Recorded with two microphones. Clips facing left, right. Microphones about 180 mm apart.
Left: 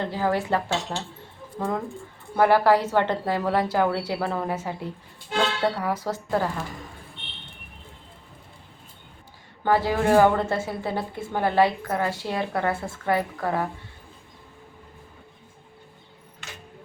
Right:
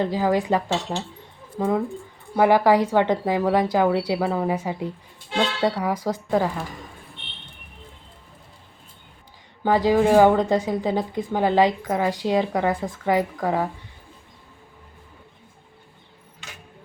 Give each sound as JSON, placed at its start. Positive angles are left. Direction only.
{"t": 0.0, "sound": "a woman's voice", "side_deg": -15}
{"t": 9.6, "sound": "a woman's voice", "side_deg": -15}